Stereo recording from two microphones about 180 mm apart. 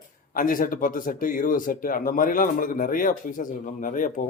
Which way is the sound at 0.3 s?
50° left (ahead or behind).